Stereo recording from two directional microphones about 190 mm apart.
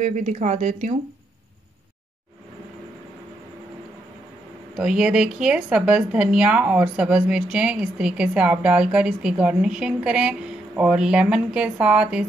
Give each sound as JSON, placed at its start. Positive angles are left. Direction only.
{"t": 0.0, "sound": "speech", "side_deg": -40}
{"t": 4.7, "sound": "speech", "side_deg": -5}